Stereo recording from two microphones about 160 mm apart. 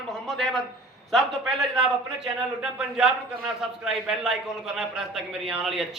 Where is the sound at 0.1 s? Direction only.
Centre (ahead or behind).